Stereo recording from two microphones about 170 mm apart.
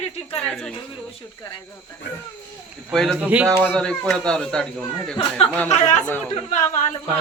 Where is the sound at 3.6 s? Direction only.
5° left (ahead or behind).